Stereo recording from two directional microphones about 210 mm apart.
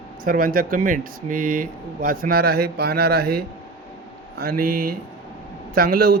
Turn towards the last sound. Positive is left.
turn(degrees=-45)  # may be behind; listen again after turning